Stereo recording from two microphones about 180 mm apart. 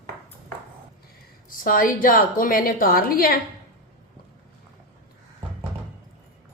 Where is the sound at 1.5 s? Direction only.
50° left (ahead or behind).